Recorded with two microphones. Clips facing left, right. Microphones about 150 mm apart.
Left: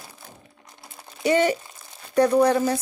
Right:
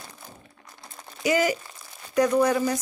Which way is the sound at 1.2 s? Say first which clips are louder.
Left 3 dB; 30° left (ahead or behind).